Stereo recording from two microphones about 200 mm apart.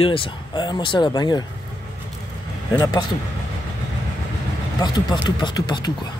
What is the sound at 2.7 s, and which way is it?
Speech, 20° left (ahead or behind).